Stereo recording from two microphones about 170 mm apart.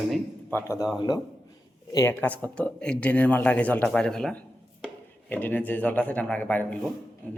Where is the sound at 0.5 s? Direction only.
15° left (ahead or behind).